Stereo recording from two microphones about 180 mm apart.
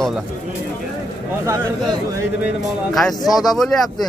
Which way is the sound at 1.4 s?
15° right (ahead or behind).